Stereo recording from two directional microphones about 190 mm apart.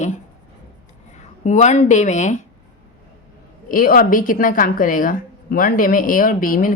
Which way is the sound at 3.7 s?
50° left (ahead or behind).